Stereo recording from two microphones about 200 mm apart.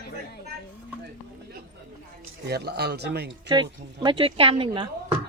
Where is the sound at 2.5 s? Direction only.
55° right (ahead or behind).